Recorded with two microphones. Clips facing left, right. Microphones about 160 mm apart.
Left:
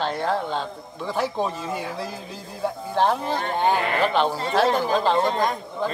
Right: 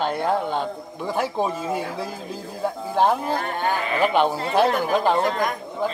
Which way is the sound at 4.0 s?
15° right (ahead or behind).